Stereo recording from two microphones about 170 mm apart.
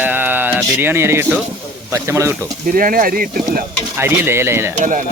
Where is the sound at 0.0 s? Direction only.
10° right (ahead or behind).